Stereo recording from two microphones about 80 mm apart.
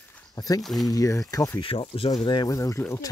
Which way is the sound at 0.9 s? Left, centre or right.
Left.